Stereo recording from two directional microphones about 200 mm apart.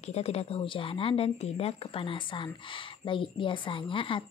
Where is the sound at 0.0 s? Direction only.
30° left (ahead or behind).